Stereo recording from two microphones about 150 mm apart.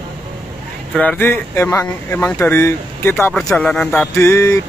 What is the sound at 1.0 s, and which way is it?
Speech, 10° left (ahead or behind).